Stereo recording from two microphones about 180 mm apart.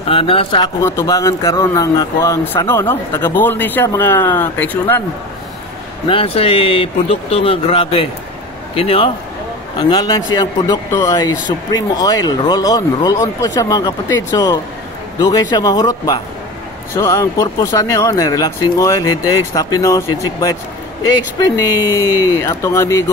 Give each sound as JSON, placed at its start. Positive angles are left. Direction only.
{"t": 0.1, "sound": "speech", "side_deg": 30}
{"t": 6.0, "sound": "speech", "side_deg": 30}
{"t": 22.2, "sound": "speech", "side_deg": 15}